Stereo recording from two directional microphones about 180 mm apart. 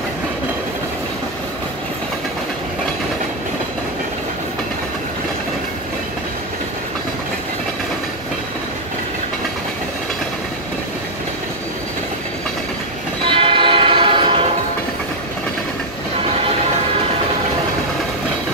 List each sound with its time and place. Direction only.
13.2 s train: 30° right (ahead or behind)